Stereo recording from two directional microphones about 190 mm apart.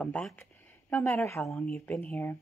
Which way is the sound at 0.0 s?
5° left (ahead or behind).